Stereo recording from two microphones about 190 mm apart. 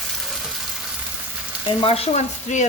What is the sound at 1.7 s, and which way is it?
A woman's voice, 30° left (ahead or behind).